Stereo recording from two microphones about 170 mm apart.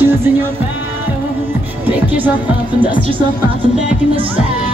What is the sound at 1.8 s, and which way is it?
Music, 10° right (ahead or behind).